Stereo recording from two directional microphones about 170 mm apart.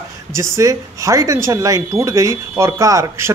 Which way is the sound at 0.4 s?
20° right (ahead or behind).